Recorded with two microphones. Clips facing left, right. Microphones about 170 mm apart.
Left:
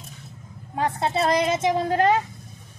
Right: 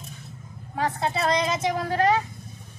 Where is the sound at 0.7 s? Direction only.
30° left (ahead or behind).